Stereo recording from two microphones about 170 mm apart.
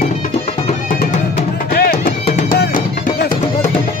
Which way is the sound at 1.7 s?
65° left (ahead or behind).